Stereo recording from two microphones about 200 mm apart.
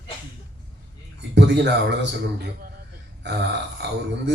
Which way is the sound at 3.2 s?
60° right (ahead or behind).